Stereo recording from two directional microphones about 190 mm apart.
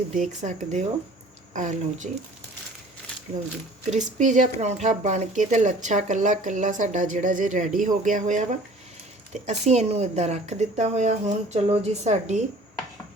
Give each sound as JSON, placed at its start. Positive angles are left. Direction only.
{"t": 0.1, "sound": "speech", "side_deg": -45}
{"t": 3.9, "sound": "speech", "side_deg": -40}